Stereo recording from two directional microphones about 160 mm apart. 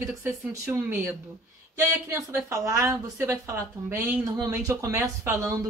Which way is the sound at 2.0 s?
20° right (ahead or behind).